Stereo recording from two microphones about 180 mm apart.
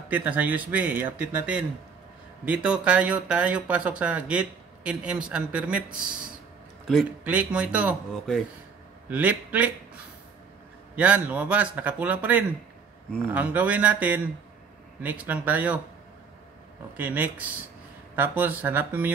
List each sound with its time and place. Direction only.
0.1 s speech: 10° right (ahead or behind)
6.9 s speech: 5° right (ahead or behind)
9.1 s speech: 10° right (ahead or behind)
11.0 s speech: 10° right (ahead or behind)
16.9 s speech: 10° right (ahead or behind)